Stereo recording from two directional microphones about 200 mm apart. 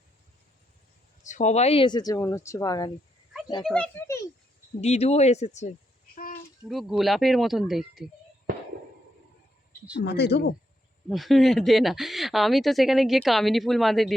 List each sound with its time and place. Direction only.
1.2 s speech: 35° left (ahead or behind); by 2.9 s 20° left (ahead or behind)
3.6 s a child's voice: 5° left (ahead or behind)
4.8 s speech: 35° left (ahead or behind)
6.7 s speech: centre (ahead or behind)
10.0 s speech: 55° left (ahead or behind)
11.1 s speech: centre (ahead or behind)